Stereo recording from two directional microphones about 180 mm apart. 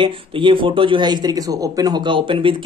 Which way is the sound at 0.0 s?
25° right (ahead or behind).